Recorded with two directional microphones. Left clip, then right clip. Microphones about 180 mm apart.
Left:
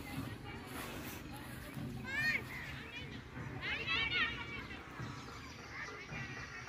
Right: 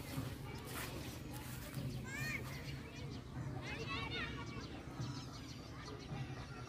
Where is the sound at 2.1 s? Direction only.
65° right (ahead or behind).